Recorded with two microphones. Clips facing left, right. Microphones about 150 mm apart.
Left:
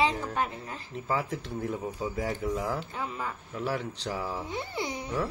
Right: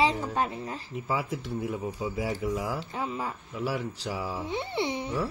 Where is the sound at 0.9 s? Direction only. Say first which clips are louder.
Left 1 dB; 10° right (ahead or behind).